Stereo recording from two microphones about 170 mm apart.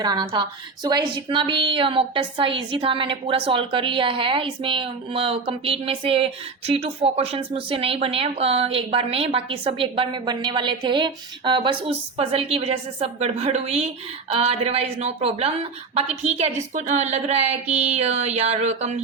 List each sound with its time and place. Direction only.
0.0 s a woman's voice: 25° right (ahead or behind); by 18.9 s 40° right (ahead or behind)